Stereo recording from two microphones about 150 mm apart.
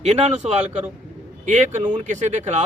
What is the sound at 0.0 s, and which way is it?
Speech, 45° right (ahead or behind).